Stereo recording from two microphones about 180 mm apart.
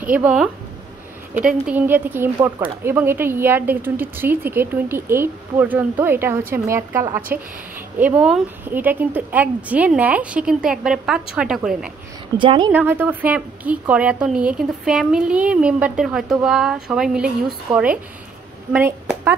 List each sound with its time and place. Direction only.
0.0 s speech: 10° right (ahead or behind)
12.4 s a woman's voice: 25° right (ahead or behind)
12.7 s speech: 10° right (ahead or behind)
18.7 s speech: 10° right (ahead or behind)